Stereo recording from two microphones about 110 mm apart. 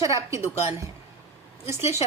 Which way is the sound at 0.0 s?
30° right (ahead or behind).